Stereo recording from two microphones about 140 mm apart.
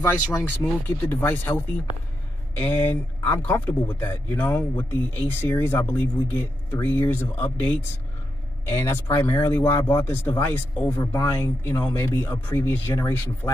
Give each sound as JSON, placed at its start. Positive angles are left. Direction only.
{"t": 0.0, "sound": "speech", "side_deg": 20}
{"t": 2.6, "sound": "speech", "side_deg": 10}